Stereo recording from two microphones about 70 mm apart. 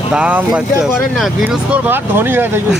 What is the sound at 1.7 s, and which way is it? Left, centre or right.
Speech, right.